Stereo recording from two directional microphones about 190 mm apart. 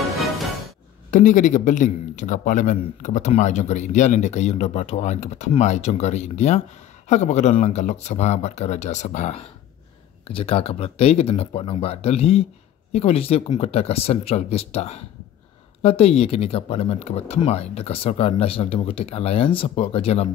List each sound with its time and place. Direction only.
0.1 s music: centre (ahead or behind)
1.1 s speech: 40° left (ahead or behind)